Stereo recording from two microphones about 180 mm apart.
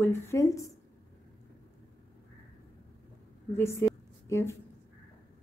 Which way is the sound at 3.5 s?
15° left (ahead or behind).